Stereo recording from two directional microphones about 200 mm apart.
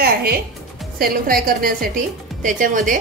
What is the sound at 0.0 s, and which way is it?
Music, 50° right (ahead or behind).